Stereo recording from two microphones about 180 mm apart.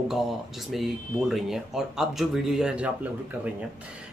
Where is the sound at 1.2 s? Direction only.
Centre (ahead or behind).